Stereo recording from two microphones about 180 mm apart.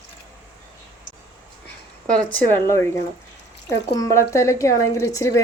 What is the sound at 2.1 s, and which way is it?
Speech, 10° left (ahead or behind).